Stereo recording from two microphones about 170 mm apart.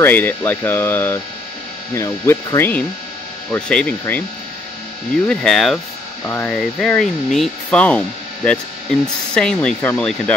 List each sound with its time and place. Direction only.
0.0 s speech: 10° left (ahead or behind)
5.3 s speech: 5° left (ahead or behind)
9.0 s speech: 5° left (ahead or behind)